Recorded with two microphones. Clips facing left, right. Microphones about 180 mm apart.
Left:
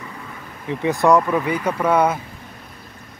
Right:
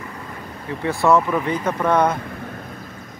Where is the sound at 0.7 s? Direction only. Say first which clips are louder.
Left 2 dB; 15° left (ahead or behind).